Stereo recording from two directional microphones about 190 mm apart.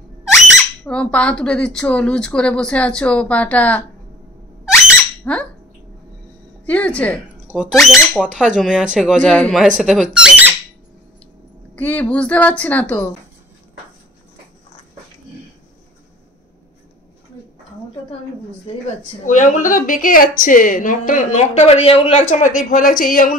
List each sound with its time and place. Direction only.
0.8 s a woman's voice: 5° left (ahead or behind)
4.7 s a sound: 5° left (ahead or behind)
6.6 s a woman's voice: 5° left (ahead or behind)
11.7 s a woman's voice: 10° left (ahead or behind)
19.2 s speech: 40° left (ahead or behind)